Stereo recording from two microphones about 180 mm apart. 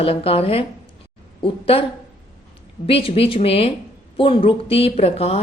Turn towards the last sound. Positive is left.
turn(degrees=35)  # may be behind; listen again after turning